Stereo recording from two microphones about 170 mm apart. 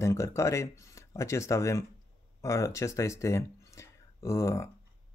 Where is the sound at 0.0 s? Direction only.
15° left (ahead or behind).